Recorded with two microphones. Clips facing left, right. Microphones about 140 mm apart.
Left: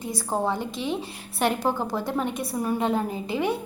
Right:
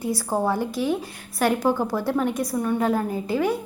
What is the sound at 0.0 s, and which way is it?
A woman's voice, 20° left (ahead or behind).